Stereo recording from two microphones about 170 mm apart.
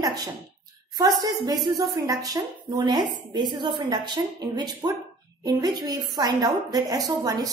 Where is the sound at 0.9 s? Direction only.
20° right (ahead or behind).